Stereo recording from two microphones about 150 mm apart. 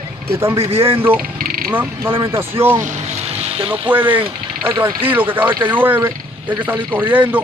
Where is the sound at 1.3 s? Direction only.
75° right (ahead or behind).